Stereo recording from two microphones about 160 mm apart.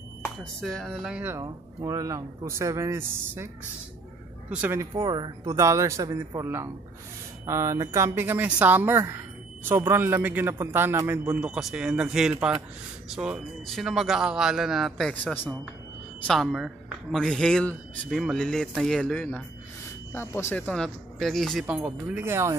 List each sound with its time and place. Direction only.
0.4 s a man's voice: 5° left (ahead or behind); by 3.4 s 15° right (ahead or behind)
4.5 s a woman's voice: 10° right (ahead or behind)
4.9 s a man's voice: 25° right (ahead or behind)
11.3 s a man's voice: 5° right (ahead or behind)